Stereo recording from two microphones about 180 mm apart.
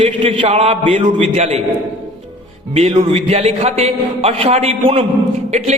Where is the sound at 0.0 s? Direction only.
30° right (ahead or behind).